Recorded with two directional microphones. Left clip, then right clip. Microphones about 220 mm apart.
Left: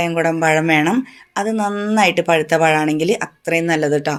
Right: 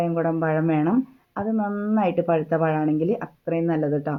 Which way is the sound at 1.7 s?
45° left (ahead or behind).